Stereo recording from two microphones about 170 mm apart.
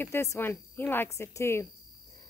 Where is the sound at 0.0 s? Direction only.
15° left (ahead or behind).